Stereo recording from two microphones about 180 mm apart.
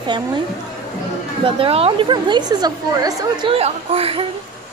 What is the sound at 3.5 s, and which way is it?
Speech, 35° right (ahead or behind).